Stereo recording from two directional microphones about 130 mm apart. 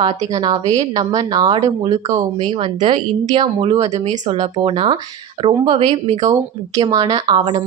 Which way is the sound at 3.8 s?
55° right (ahead or behind).